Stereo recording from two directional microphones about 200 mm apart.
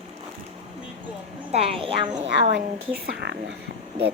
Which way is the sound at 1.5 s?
30° right (ahead or behind).